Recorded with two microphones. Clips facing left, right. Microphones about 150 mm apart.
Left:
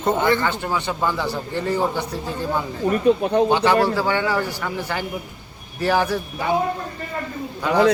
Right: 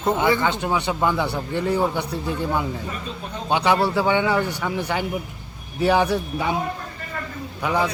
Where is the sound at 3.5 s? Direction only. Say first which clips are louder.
Left 2 dB; 15° right (ahead or behind).